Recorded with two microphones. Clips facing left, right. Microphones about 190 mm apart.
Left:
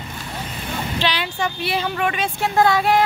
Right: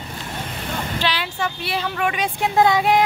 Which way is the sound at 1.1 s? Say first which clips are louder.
Left 1 dB; 5° right (ahead or behind).